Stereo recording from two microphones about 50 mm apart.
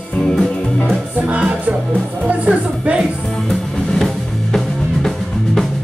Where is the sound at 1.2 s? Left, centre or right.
Right.